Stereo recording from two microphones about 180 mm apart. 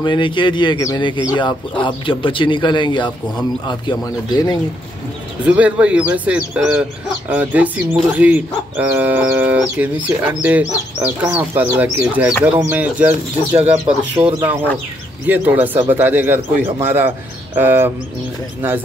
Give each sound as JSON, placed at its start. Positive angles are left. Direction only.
{"t": 0.0, "sound": "speech", "side_deg": 25}
{"t": 5.4, "sound": "speech", "side_deg": -5}
{"t": 13.5, "sound": "speech", "side_deg": -30}
{"t": 15.2, "sound": "speech", "side_deg": -10}